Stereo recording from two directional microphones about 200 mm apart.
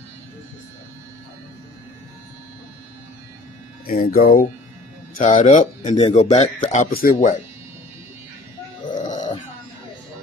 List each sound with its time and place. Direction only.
3.8 s speech: 45° left (ahead or behind)
5.8 s speech: 25° left (ahead or behind)
6.9 s speech: 45° left (ahead or behind)
9.1 s grunt: 20° left (ahead or behind)